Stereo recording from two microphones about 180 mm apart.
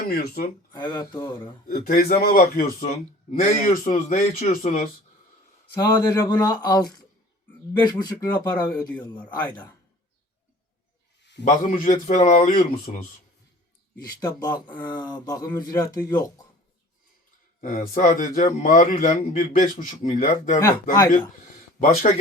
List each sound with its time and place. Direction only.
0.0 s a man's voice: 55° left (ahead or behind)
0.7 s speech: 25° left (ahead or behind)
1.6 s a man's voice: 55° left (ahead or behind)
5.7 s speech: 20° left (ahead or behind)
9.1 s speech: 10° left (ahead or behind)
11.4 s a man's voice: 45° left (ahead or behind)
14.2 s speech: 20° left (ahead or behind)
17.6 s a man's voice: 50° left (ahead or behind)